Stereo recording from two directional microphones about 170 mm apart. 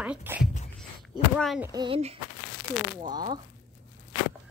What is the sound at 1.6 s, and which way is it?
Speech, 25° right (ahead or behind).